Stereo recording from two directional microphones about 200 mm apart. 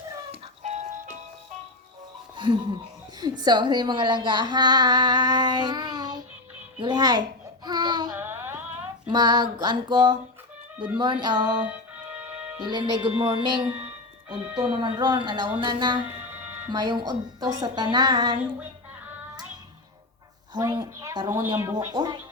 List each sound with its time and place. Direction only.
0.3 s music: 35° right (ahead or behind)
2.3 s music: 25° right (ahead or behind)
3.2 s speech: 20° right (ahead or behind)
6.7 s babbling: 20° right (ahead or behind)
8.1 s a sound: 10° right (ahead or behind)
9.0 s speech: 20° right (ahead or behind)
12.1 s music: 10° right (ahead or behind)
12.5 s speech: 20° right (ahead or behind)
14.4 s speech: 10° right (ahead or behind)
14.7 s speech: 25° right (ahead or behind)
20.5 s speech: 20° right (ahead or behind)